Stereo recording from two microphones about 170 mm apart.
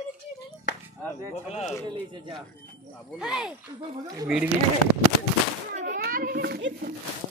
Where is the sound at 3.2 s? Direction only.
5° right (ahead or behind).